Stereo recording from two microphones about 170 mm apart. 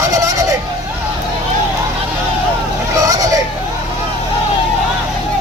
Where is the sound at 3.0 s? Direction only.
20° right (ahead or behind).